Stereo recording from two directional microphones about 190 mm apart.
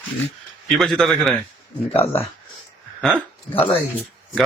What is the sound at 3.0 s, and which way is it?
Speech, 5° left (ahead or behind).